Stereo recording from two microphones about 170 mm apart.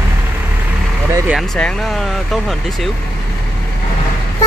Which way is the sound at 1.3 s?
Centre (ahead or behind).